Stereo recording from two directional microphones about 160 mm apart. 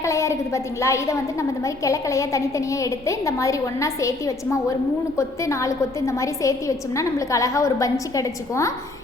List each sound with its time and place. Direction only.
0.0 s a woman's voice: 20° left (ahead or behind)